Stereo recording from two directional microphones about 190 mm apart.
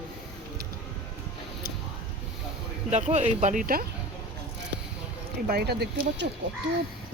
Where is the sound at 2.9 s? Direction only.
40° right (ahead or behind).